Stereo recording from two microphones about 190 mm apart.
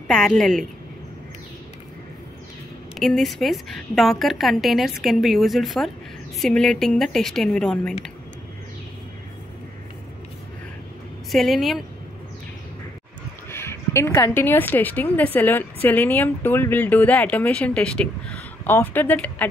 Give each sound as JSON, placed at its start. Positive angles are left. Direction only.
{"t": 0.1, "sound": "a woman's voice", "side_deg": 5}
{"t": 2.9, "sound": "a woman's voice", "side_deg": 0}
{"t": 11.3, "sound": "a woman's voice", "side_deg": 0}
{"t": 13.5, "sound": "a woman's voice", "side_deg": 15}